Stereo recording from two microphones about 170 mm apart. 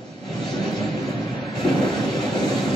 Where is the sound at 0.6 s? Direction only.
Centre (ahead or behind).